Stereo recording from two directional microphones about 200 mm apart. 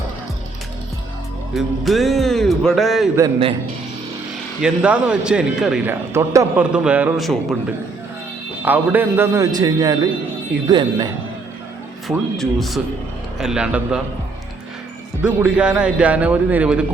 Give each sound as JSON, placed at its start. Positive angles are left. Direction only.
{"t": 1.5, "sound": "a man's voice", "side_deg": 0}
{"t": 4.6, "sound": "a man's voice", "side_deg": -5}
{"t": 8.6, "sound": "a man's voice", "side_deg": -10}
{"t": 12.0, "sound": "a man's voice", "side_deg": 0}
{"t": 15.2, "sound": "a man's voice", "side_deg": -5}